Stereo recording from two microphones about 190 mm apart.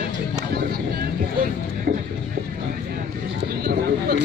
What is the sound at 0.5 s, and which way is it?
Vehicle, 55° right (ahead or behind).